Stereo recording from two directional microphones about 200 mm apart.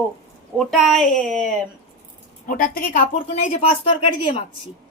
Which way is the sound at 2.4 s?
45° left (ahead or behind).